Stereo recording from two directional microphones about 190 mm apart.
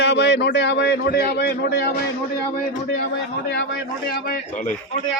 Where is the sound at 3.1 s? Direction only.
65° left (ahead or behind); by 4.7 s 40° left (ahead or behind).